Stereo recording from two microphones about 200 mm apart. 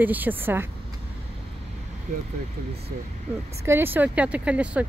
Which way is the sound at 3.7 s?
10° right (ahead or behind).